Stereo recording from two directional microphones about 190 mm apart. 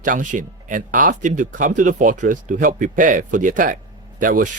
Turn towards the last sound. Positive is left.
turn(degrees=-45)  # may be behind; listen again after turning